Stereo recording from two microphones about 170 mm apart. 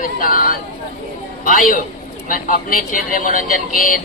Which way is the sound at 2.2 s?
55° left (ahead or behind).